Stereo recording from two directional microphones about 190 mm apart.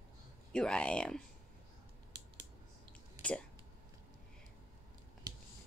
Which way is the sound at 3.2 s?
5° left (ahead or behind).